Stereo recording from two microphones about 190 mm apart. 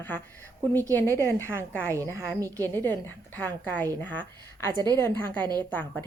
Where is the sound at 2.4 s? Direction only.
15° right (ahead or behind).